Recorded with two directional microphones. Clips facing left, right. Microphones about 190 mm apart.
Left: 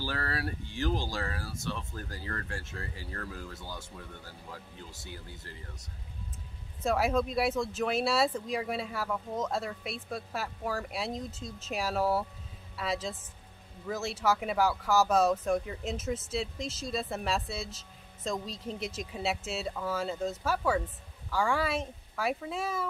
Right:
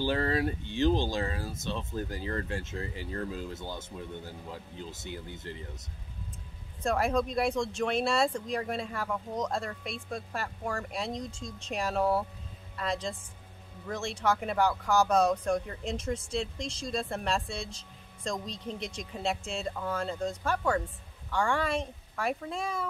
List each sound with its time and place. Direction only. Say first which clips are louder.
0.0 s speech: right 7 dB; 20° right (ahead or behind)
6.8 s speech: even; 5° left (ahead or behind)